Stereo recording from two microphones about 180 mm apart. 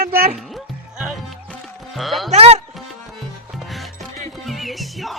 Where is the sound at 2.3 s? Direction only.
35° right (ahead or behind).